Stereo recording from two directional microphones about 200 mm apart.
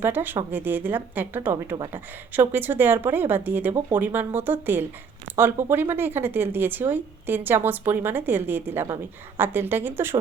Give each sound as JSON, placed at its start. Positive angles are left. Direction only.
{"t": 0.0, "sound": "speech", "side_deg": -10}